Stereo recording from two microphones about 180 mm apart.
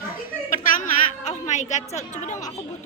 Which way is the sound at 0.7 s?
45° left (ahead or behind).